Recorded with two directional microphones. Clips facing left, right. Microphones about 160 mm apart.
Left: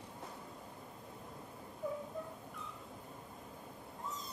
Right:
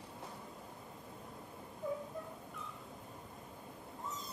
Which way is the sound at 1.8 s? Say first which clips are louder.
Right 1 dB; centre (ahead or behind).